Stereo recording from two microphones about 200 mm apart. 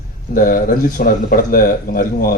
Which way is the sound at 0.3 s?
45° left (ahead or behind).